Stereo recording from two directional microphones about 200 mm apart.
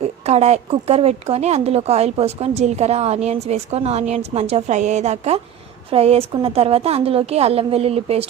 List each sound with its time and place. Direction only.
0.0 s speech: 35° right (ahead or behind)